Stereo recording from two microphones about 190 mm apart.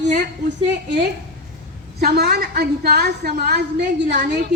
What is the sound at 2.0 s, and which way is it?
A woman's voice, 55° right (ahead or behind).